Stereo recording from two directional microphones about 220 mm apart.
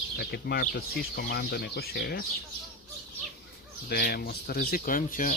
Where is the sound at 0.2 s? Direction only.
45° left (ahead or behind).